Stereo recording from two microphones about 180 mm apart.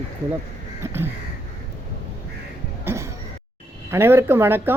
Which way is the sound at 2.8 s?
15° right (ahead or behind).